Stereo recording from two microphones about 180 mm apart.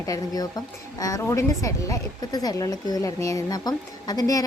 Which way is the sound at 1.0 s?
20° left (ahead or behind).